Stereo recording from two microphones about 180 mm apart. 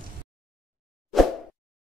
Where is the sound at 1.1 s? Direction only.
Centre (ahead or behind).